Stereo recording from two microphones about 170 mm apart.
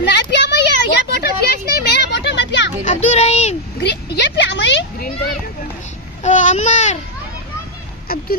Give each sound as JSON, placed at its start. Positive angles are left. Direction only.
{"t": 0.0, "sound": "a sound", "side_deg": 85}
{"t": 2.8, "sound": "child singing", "side_deg": 45}
{"t": 3.8, "sound": "vehicle", "side_deg": 90}
{"t": 6.2, "sound": "babbling", "side_deg": 45}